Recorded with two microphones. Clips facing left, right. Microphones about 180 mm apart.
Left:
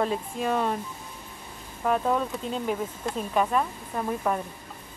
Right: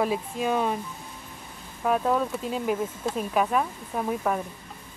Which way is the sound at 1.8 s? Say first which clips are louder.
Right 1 dB; 5° right (ahead or behind).